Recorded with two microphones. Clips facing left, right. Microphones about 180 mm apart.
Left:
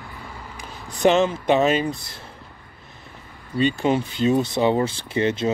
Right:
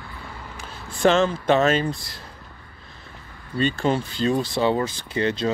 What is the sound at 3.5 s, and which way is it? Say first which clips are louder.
Speech: left 2 dB; 15° left (ahead or behind).